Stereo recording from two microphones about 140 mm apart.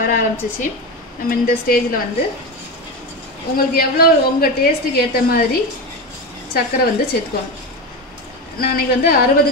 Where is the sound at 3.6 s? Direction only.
90° left.